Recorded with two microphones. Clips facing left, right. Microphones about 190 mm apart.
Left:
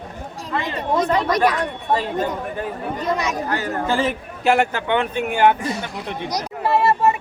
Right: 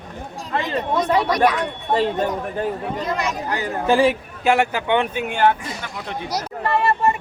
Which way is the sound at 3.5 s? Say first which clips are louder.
Right 6 dB; 15° right (ahead or behind).